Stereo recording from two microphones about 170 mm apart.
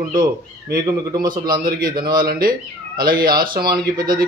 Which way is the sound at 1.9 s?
25° right (ahead or behind).